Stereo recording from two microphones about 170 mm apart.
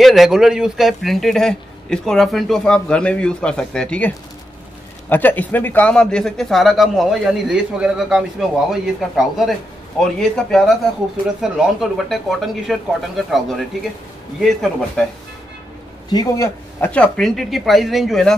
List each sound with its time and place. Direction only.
0.0 s a man's voice: centre (ahead or behind)
5.1 s a man's voice: 10° left (ahead or behind)
14.4 s a man's voice: centre (ahead or behind)
16.1 s a man's voice: 25° left (ahead or behind)
16.8 s a man's voice: 5° left (ahead or behind)